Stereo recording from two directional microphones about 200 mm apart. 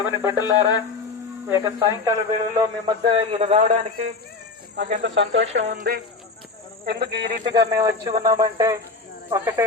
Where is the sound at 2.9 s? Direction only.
25° right (ahead or behind).